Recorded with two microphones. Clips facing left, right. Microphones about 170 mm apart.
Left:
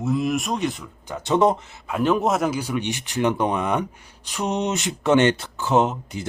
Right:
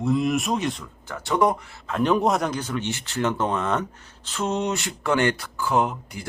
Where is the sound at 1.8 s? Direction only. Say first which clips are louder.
Even; 5° left (ahead or behind); by 6.2 s 25° left (ahead or behind).